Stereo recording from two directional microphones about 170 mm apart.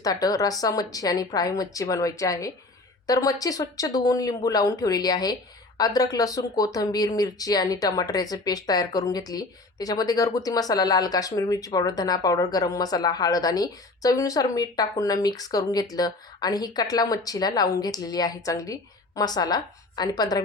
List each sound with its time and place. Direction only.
0.0 s speech: 20° left (ahead or behind)